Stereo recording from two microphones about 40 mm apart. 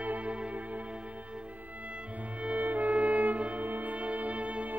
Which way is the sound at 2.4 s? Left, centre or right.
Right.